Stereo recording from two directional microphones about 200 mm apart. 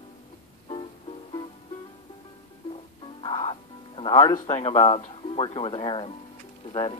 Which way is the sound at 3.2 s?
25° left (ahead or behind).